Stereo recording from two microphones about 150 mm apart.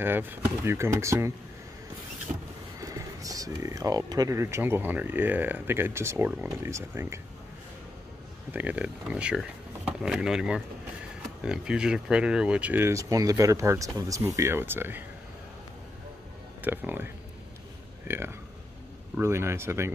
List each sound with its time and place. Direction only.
0.0 s speech: 15° right (ahead or behind)
2.8 s speech: 25° right (ahead or behind)
8.5 s speech: 10° right (ahead or behind)
16.6 s speech: 10° right (ahead or behind)